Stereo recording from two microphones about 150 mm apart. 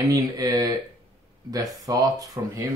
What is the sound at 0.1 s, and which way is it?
Speech, 25° right (ahead or behind).